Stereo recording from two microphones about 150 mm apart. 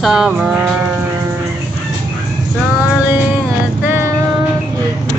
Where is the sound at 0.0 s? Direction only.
5° right (ahead or behind).